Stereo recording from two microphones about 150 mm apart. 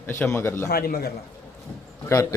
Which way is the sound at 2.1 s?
20° left (ahead or behind).